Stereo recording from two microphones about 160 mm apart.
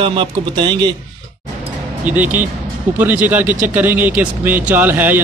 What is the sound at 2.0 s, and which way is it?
Speech, 10° right (ahead or behind).